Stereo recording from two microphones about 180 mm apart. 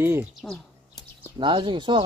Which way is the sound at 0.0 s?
10° right (ahead or behind).